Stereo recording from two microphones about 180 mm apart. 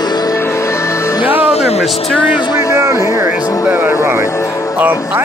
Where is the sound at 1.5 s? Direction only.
35° left (ahead or behind).